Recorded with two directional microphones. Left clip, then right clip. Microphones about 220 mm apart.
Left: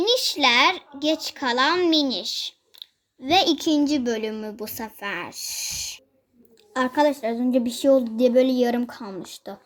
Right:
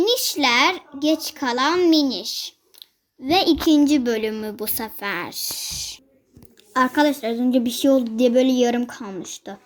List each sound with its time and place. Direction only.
0.0 s a child's voice: centre (ahead or behind)
5.0 s speech: 20° right (ahead or behind)
6.7 s a woman's voice: 5° right (ahead or behind)